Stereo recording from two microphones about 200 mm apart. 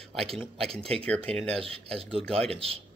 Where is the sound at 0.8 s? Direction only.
30° right (ahead or behind).